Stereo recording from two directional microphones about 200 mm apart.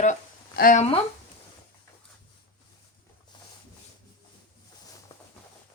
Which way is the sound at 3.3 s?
25° left (ahead or behind).